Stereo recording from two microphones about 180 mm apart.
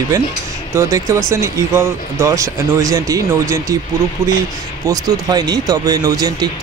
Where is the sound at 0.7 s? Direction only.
15° right (ahead or behind).